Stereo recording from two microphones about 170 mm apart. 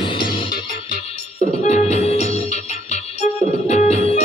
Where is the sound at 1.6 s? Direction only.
40° left (ahead or behind).